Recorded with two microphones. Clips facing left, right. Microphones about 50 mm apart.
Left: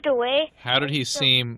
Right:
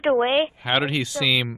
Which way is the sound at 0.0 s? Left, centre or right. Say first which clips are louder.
Right 2 dB; centre.